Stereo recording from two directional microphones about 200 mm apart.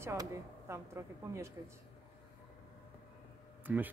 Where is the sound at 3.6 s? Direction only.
10° right (ahead or behind).